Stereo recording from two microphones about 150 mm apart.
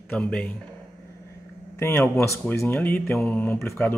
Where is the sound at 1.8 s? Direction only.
15° left (ahead or behind).